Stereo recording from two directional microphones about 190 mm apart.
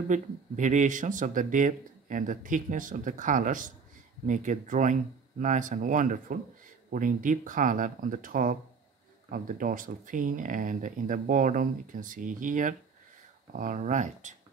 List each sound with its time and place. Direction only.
0.1 s speech: 40° right (ahead or behind)